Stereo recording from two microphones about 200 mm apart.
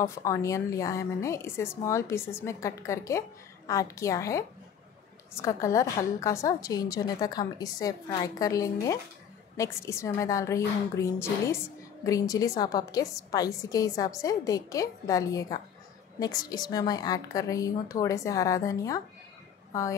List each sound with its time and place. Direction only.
0.0 s a woman's voice: 15° left (ahead or behind)